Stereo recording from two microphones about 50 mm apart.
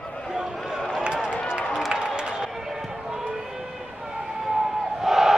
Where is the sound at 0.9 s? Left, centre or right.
Centre.